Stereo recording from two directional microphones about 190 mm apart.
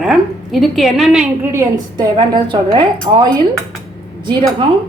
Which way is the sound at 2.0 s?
25° right (ahead or behind).